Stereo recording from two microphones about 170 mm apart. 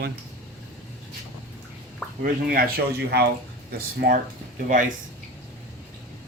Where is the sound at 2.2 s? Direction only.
60° right (ahead or behind).